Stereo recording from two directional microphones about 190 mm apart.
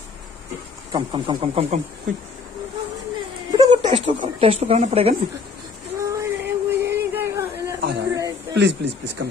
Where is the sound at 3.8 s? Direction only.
25° right (ahead or behind).